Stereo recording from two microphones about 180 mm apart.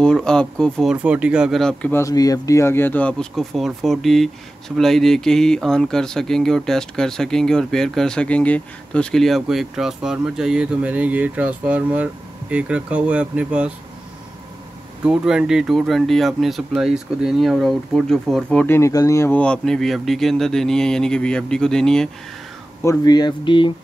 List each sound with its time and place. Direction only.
0.0 s speech: 5° left (ahead or behind)
0.9 s speech: 5° right (ahead or behind)
15.0 s speech: 5° right (ahead or behind)
22.8 s speech: 20° left (ahead or behind)